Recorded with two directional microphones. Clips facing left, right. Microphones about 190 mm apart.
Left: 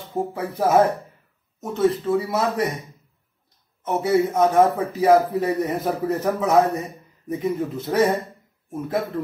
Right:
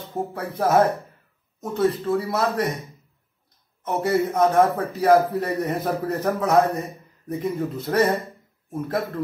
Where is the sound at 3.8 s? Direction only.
5° left (ahead or behind).